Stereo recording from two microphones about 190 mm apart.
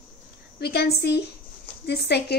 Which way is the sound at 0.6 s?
55° left (ahead or behind).